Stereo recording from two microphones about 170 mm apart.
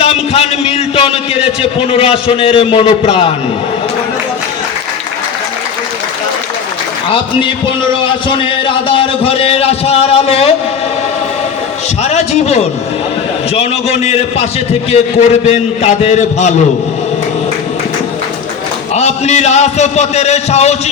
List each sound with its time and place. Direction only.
0.0 s a man's voice: 35° left (ahead or behind)
8.9 s a man's voice: 35° left (ahead or behind)
12.0 s a man's voice: 40° left (ahead or behind)
18.9 s a man's voice: 40° left (ahead or behind)